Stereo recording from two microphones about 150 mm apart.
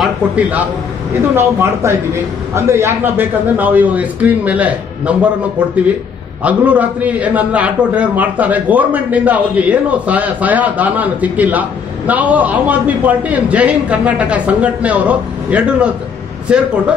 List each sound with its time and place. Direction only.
0.0 s a man's voice: 10° right (ahead or behind)
6.4 s a man's voice: 10° right (ahead or behind)